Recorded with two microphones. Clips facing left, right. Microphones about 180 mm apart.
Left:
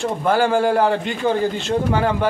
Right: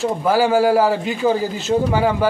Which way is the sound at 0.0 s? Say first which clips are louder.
Right 1 dB; 5° right (ahead or behind).